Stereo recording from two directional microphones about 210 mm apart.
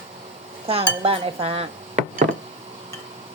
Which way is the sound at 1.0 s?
25° right (ahead or behind).